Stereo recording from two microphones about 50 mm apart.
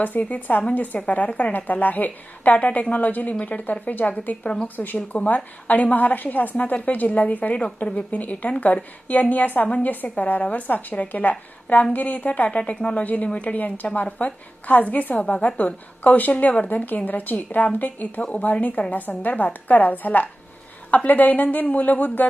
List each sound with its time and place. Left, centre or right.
0.0 s a woman's voice: left
9.6 s a woman's voice: left
9.9 s a woman's voice: left
18.2 s a woman's voice: left
18.8 s a woman's voice: left